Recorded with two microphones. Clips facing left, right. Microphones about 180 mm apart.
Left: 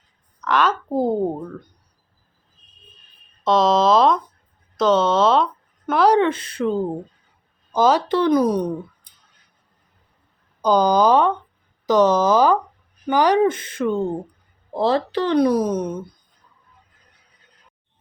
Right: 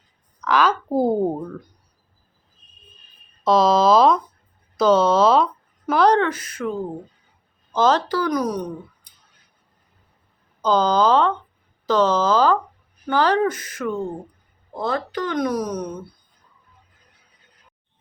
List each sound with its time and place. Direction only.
0.4 s speech: centre (ahead or behind)
3.4 s speech: centre (ahead or behind)
6.1 s speech: 25° left (ahead or behind)
7.7 s speech: 10° left (ahead or behind)
8.0 s speech: 25° left (ahead or behind)
10.6 s speech: 15° left (ahead or behind)